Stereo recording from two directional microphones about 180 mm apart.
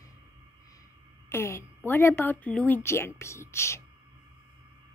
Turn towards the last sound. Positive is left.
turn(degrees=15)  # may be behind; listen again after turning